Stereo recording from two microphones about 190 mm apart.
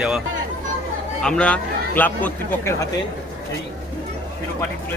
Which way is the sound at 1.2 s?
5° left (ahead or behind).